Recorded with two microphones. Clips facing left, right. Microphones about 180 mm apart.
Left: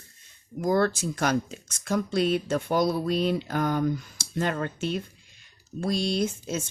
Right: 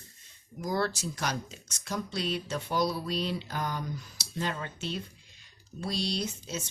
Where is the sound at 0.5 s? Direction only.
55° left (ahead or behind).